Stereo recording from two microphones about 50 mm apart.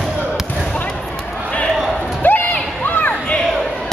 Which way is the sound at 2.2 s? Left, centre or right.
Left.